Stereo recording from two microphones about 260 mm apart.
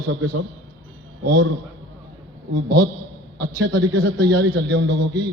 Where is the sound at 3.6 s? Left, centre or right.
Right.